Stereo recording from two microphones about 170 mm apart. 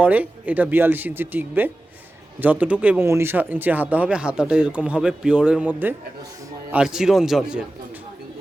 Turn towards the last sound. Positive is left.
turn(degrees=-5)  # may be behind; listen again after turning